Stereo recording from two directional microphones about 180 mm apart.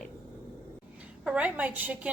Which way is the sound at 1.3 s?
10° right (ahead or behind).